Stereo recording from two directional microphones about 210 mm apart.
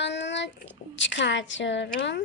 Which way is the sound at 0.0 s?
55° left (ahead or behind).